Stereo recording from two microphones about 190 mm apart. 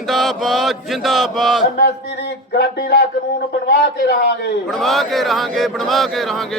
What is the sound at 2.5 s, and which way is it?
Speech, 60° left (ahead or behind).